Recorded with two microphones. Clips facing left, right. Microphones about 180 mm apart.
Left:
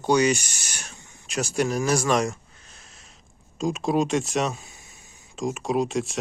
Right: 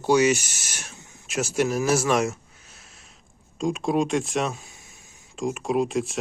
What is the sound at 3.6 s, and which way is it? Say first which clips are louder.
Speech: even; centre (ahead or behind).